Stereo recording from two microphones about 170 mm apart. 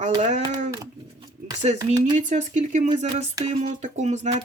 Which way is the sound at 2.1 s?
45° right (ahead or behind).